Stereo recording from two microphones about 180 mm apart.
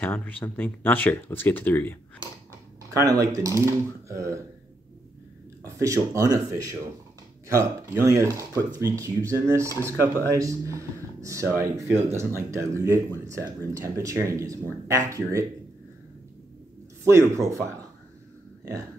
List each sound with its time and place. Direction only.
0.0 s speech: 10° left (ahead or behind)
2.9 s speech: 20° right (ahead or behind)
5.8 s speech: 15° right (ahead or behind)
17.0 s speech: 15° right (ahead or behind)